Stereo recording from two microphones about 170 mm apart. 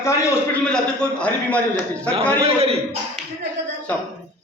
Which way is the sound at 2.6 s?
35° right (ahead or behind).